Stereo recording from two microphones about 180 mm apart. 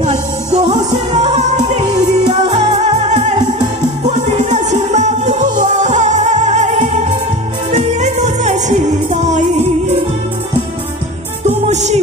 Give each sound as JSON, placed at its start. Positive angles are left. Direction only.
{"t": 0.0, "sound": "music", "side_deg": -40}
{"t": 11.4, "sound": "music", "side_deg": -40}